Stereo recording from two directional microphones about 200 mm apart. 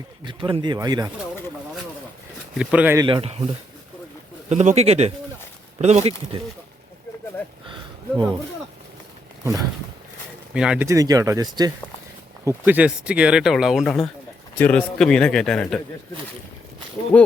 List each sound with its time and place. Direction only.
0.3 s speech: 25° right (ahead or behind)
2.6 s speech: 5° right (ahead or behind)
3.1 s speech: 30° right (ahead or behind)
4.4 s speech: 35° right (ahead or behind)
8.1 s speech: 5° right (ahead or behind)
10.5 s speech: 5° right (ahead or behind)
10.8 s speech: 15° right (ahead or behind)
12.5 s speech: 10° right (ahead or behind)
17.1 s speech: 5° left (ahead or behind)